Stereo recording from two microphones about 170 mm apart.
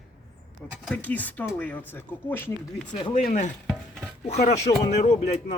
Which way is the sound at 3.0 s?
30° left (ahead or behind).